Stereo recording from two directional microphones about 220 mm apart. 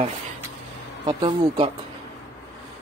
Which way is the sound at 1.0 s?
25° right (ahead or behind).